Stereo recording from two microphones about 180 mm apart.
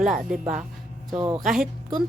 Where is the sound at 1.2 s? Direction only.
20° right (ahead or behind).